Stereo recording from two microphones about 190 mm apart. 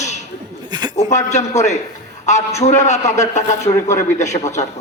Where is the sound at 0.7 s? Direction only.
20° right (ahead or behind).